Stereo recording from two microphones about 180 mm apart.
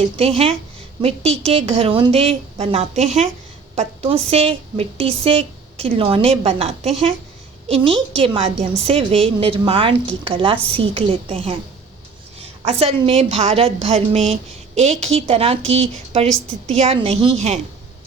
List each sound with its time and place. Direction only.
0.0 s a woman's voice: 35° right (ahead or behind)